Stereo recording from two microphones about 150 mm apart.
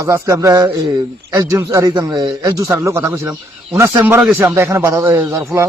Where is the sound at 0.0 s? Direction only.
20° right (ahead or behind).